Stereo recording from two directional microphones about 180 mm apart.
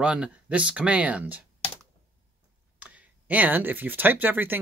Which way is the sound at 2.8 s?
5° right (ahead or behind).